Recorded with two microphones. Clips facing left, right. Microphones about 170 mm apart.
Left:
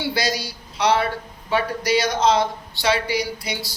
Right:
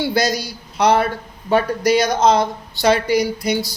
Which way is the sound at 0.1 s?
45° right (ahead or behind).